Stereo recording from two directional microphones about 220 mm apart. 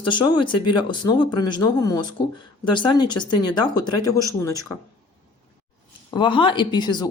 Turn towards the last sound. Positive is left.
turn(degrees=20)  # may be behind; listen again after turning